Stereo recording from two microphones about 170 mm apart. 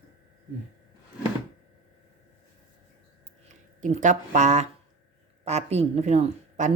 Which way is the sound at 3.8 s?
45° right (ahead or behind).